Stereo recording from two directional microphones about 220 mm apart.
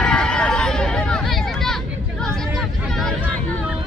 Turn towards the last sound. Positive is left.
turn(degrees=0)  # may be behind; listen again after turning